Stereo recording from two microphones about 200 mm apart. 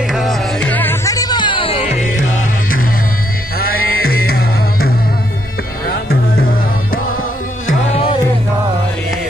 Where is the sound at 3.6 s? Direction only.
50° left (ahead or behind).